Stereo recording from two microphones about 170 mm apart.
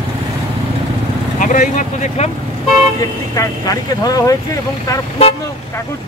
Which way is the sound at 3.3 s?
20° left (ahead or behind).